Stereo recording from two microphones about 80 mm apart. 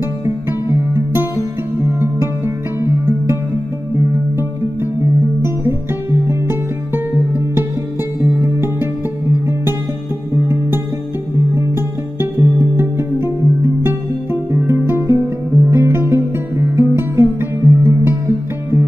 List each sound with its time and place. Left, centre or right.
0.2 s music: right
3.9 s music: right
11.5 s music: right